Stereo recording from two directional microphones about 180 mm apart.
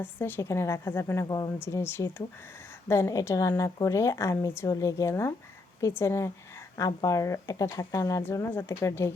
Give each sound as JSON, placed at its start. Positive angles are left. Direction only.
{"t": 0.0, "sound": "a woman's voice", "side_deg": 10}